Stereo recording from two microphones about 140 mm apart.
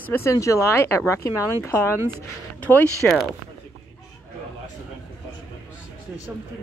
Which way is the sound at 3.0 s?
5° left (ahead or behind).